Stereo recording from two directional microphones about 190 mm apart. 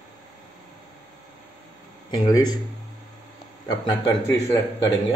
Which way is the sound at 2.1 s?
20° left (ahead or behind).